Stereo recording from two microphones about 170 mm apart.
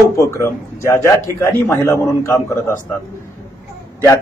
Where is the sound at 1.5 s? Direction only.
15° left (ahead or behind).